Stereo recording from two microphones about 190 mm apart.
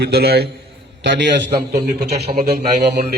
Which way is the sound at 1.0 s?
65° right (ahead or behind).